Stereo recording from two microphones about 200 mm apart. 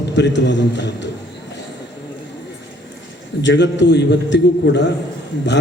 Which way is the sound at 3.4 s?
60° left (ahead or behind).